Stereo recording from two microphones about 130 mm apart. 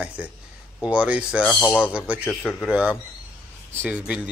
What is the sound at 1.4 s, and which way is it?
Speech, 10° left (ahead or behind).